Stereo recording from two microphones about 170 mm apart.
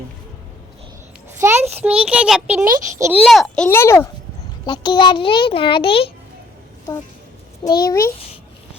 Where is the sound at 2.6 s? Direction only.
15° right (ahead or behind).